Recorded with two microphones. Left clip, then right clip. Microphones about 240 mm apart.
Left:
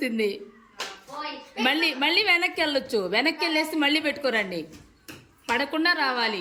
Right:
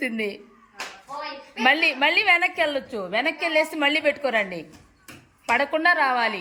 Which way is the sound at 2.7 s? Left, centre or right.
Left.